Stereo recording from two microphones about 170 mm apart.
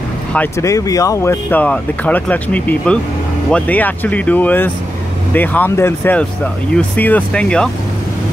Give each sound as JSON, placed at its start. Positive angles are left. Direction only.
{"t": 0.3, "sound": "speech", "side_deg": 15}